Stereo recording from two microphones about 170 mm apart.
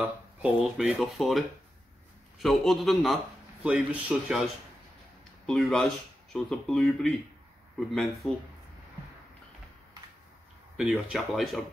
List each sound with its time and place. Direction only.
0.4 s speech: 5° right (ahead or behind)
5.5 s speech: centre (ahead or behind)
10.8 s speech: 5° right (ahead or behind)